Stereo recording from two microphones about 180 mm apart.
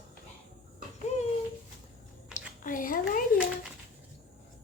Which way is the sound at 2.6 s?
50° left (ahead or behind).